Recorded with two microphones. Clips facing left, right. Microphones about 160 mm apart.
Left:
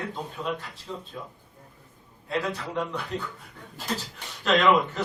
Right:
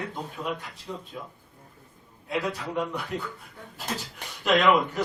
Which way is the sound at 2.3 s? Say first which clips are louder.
Even; 15° right (ahead or behind).